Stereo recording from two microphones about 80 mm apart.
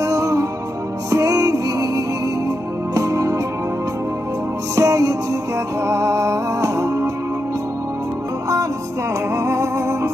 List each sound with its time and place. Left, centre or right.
0.0 s music: right
4.7 s music: right
9.3 s music: right